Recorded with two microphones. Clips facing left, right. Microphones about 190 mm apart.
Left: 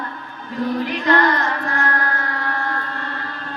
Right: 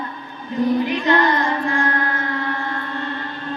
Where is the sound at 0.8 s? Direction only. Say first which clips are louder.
Even; 20° right (ahead or behind).